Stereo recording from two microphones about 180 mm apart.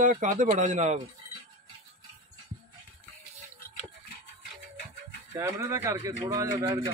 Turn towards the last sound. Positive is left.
turn(degrees=-20)  # may be behind; listen again after turning